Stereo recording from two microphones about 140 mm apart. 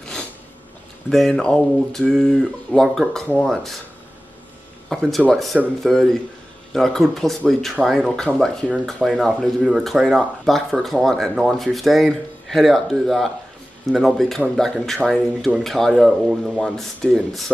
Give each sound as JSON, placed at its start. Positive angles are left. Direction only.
{"t": 0.0, "sound": "a sound", "side_deg": 5}
{"t": 1.1, "sound": "speech", "side_deg": 0}
{"t": 4.8, "sound": "speech", "side_deg": 0}